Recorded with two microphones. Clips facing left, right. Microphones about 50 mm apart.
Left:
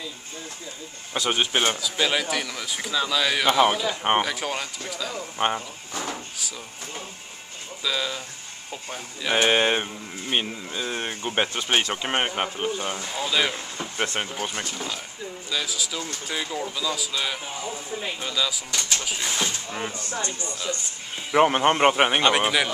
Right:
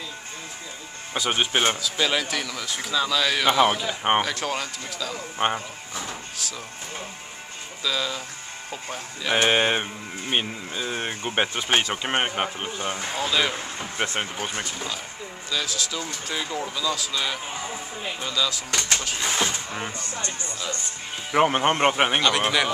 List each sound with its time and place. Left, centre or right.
1.1 s speech: centre
1.8 s speech: centre
7.8 s speech: centre
13.9 s speech: centre
15.5 s speech: centre
18.7 s speech: right
19.2 s speech: right
19.9 s speech: right
21.3 s speech: centre